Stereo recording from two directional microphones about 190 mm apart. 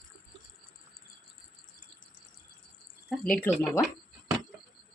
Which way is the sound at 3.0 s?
Centre (ahead or behind).